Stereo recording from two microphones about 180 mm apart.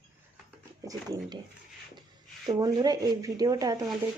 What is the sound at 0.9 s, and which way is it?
Speech, 20° right (ahead or behind).